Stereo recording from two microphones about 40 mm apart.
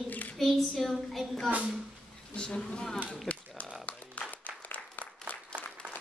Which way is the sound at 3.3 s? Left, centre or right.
Left.